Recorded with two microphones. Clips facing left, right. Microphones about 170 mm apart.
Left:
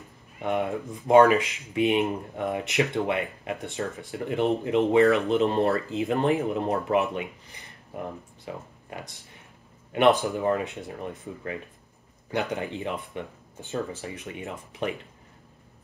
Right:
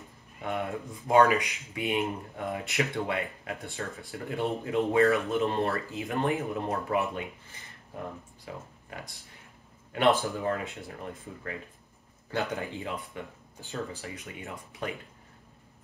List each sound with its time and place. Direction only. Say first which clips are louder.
0.4 s speech: left 6 dB; 20° left (ahead or behind)